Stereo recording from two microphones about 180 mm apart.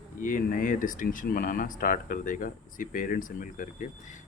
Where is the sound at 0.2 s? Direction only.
50° left (ahead or behind).